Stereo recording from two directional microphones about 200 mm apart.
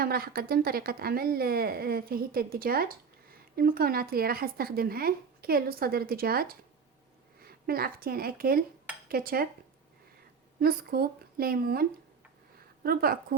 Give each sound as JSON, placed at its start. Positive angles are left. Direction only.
{"t": 0.0, "sound": "a woman's voice", "side_deg": -50}
{"t": 10.6, "sound": "a woman's voice", "side_deg": -50}